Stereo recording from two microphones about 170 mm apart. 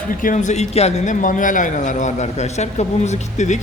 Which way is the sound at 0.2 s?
50° left (ahead or behind).